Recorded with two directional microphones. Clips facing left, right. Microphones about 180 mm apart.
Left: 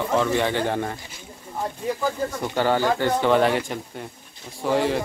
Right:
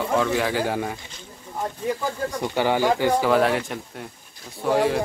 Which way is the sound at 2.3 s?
15° right (ahead or behind).